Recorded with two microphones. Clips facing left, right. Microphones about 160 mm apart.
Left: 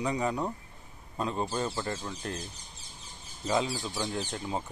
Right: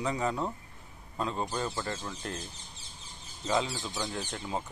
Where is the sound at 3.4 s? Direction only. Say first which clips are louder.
Left 1 dB; 25° left (ahead or behind).